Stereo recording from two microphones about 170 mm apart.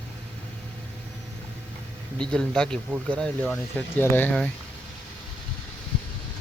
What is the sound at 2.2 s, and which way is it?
Speech, 5° left (ahead or behind).